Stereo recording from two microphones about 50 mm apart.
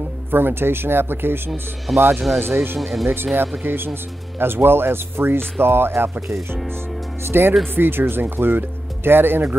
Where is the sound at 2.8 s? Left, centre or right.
Centre.